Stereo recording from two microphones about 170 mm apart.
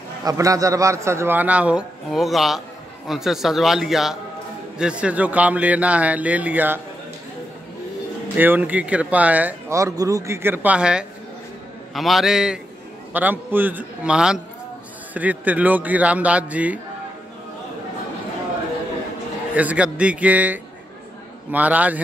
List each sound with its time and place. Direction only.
0.2 s a man's voice: 20° right (ahead or behind)
8.4 s a man's voice: 10° right (ahead or behind)
19.5 s speech: 10° right (ahead or behind)